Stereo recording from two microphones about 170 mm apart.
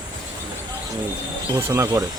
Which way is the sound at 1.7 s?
20° right (ahead or behind).